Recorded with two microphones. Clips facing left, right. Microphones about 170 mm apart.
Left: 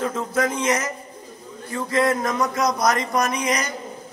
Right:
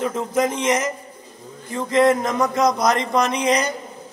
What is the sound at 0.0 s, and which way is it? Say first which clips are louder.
A man's voice: right 2 dB; 20° right (ahead or behind).